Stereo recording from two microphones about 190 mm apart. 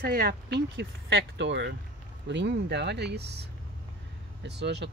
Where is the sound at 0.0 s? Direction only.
55° right (ahead or behind).